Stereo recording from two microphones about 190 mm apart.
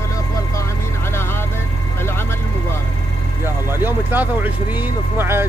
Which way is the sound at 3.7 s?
10° right (ahead or behind).